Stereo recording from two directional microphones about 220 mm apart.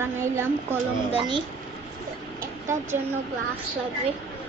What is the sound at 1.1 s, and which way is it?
Speech, 20° right (ahead or behind).